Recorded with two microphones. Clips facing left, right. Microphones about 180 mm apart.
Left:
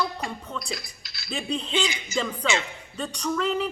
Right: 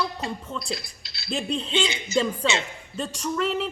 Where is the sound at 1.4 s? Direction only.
Centre (ahead or behind).